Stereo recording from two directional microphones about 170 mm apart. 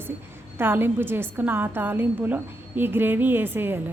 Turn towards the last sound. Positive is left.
turn(degrees=-15)  # may be behind; listen again after turning